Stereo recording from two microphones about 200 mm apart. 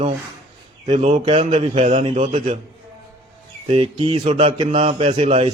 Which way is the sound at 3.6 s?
25° right (ahead or behind).